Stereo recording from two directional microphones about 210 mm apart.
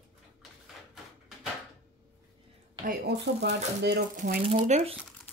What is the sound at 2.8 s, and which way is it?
Speech, 55° right (ahead or behind).